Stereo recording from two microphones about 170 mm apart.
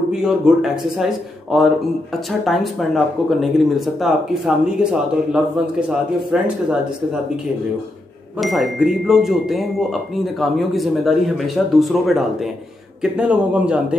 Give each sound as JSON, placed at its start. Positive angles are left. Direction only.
{"t": 0.1, "sound": "speech", "side_deg": -5}
{"t": 8.4, "sound": "a man's voice", "side_deg": 0}